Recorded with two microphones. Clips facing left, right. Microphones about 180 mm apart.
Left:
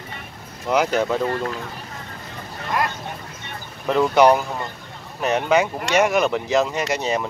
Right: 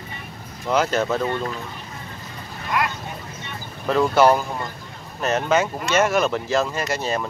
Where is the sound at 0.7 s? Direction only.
15° left (ahead or behind).